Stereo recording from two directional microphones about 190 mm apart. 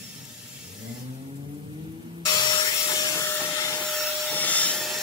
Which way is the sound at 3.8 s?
5° left (ahead or behind).